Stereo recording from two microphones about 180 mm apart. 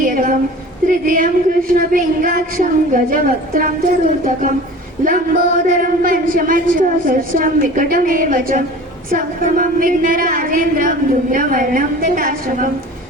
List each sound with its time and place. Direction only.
0.0 s a sound: 50° right (ahead or behind)
0.9 s speech: 50° right (ahead or behind)
5.0 s speech: 50° right (ahead or behind)